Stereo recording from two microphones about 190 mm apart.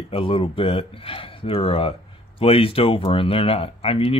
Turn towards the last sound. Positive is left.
turn(degrees=30)  # may be behind; listen again after turning